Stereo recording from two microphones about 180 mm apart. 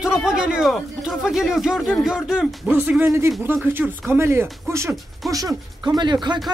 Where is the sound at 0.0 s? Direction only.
5° right (ahead or behind).